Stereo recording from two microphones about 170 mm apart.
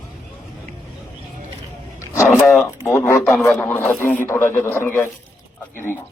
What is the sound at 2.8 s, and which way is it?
Speech, 15° left (ahead or behind).